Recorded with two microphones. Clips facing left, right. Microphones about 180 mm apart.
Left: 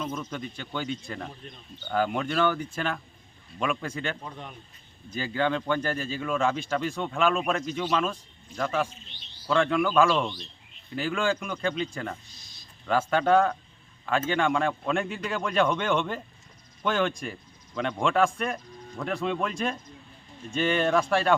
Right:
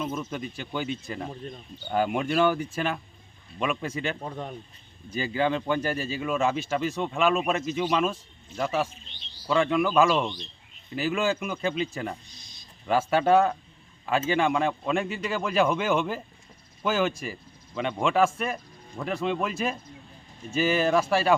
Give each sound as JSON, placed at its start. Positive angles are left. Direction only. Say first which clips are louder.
{"t": 0.0, "sound": "a man's voice", "louder": "right 2 dB", "side_deg": -5}
{"t": 4.2, "sound": "speech", "louder": "right 6 dB", "side_deg": -40}
{"t": 5.1, "sound": "a man's voice", "louder": "right 1 dB", "side_deg": -10}